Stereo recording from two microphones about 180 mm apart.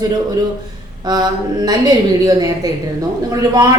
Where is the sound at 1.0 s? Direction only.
20° right (ahead or behind).